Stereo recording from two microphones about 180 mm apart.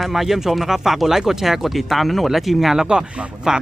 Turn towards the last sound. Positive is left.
turn(degrees=-5)  # may be behind; listen again after turning